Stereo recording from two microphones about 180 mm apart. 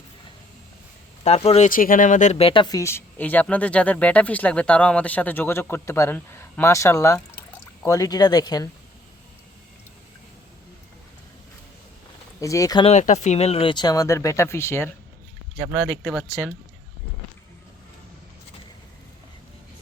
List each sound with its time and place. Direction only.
1.2 s speech: 35° left (ahead or behind)
12.4 s speech: 15° left (ahead or behind)
12.8 s speech: 40° left (ahead or behind); by 14.8 s 15° left (ahead or behind)
16.2 s speech: 15° left (ahead or behind)